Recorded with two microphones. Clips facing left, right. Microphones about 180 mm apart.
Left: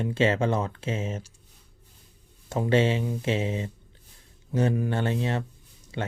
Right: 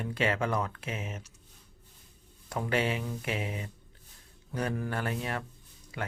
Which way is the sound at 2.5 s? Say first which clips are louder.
Left 7 dB; 25° left (ahead or behind).